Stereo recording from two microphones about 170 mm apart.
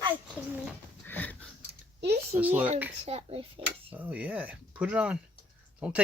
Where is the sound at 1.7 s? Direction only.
70° right (ahead or behind).